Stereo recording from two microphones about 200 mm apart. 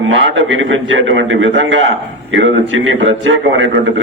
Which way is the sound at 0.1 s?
70° right (ahead or behind).